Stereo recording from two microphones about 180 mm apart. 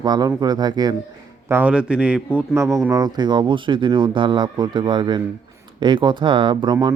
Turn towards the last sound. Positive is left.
turn(degrees=-25)  # may be behind; listen again after turning